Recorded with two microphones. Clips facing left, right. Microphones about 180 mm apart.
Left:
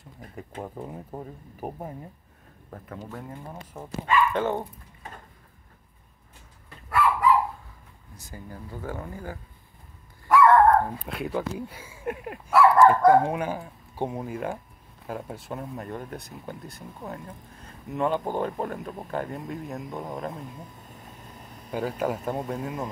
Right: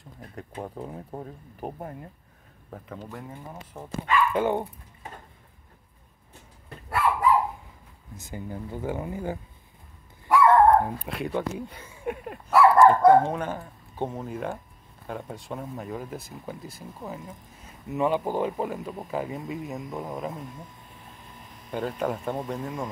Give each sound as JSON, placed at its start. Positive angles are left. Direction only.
{"t": 0.4, "sound": "speech", "side_deg": 0}
{"t": 4.4, "sound": "dog", "side_deg": -15}
{"t": 8.2, "sound": "speech", "side_deg": -20}
{"t": 10.2, "sound": "dog", "side_deg": -15}
{"t": 10.9, "sound": "speech", "side_deg": 0}
{"t": 21.7, "sound": "speech", "side_deg": 5}